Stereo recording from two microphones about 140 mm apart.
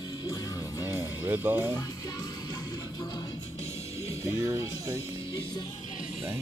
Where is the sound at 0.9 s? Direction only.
15° right (ahead or behind).